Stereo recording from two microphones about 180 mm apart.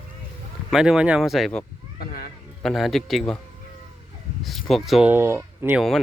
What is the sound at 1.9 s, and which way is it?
Cat, 60° left (ahead or behind).